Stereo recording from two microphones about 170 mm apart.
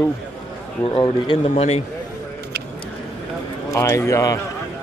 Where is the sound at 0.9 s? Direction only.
30° left (ahead or behind).